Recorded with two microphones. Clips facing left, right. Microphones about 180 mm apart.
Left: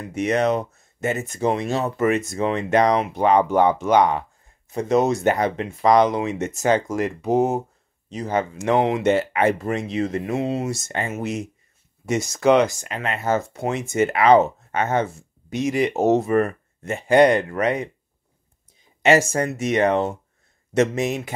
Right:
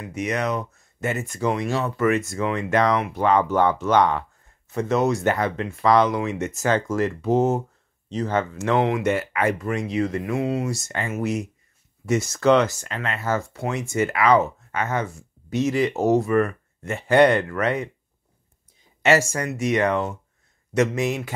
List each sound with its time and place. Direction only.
0.0 s speech: 30° left (ahead or behind)
19.0 s speech: 25° left (ahead or behind)